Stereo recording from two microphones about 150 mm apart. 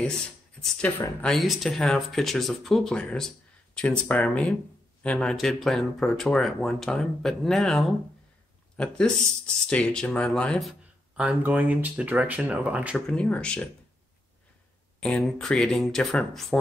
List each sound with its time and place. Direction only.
0.6 s speech: 10° left (ahead or behind); by 13.0 s 10° right (ahead or behind)
13.0 s speech: 5° left (ahead or behind)
15.0 s speech: 5° left (ahead or behind)